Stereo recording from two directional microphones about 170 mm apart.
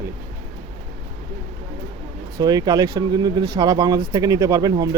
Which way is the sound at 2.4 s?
25° right (ahead or behind).